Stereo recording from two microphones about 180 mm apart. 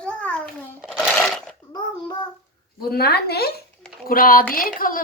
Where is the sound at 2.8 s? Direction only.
60° left (ahead or behind).